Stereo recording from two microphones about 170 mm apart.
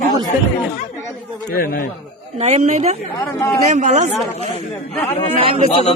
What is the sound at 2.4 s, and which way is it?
A man's voice, 40° right (ahead or behind).